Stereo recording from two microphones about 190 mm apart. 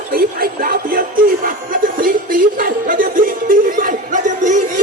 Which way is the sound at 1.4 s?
50° right (ahead or behind).